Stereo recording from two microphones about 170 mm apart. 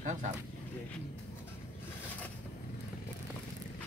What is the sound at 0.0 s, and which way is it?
Speech, 45° right (ahead or behind).